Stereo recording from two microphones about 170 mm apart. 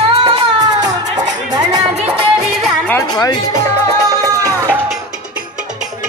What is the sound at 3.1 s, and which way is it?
Speech, 20° left (ahead or behind).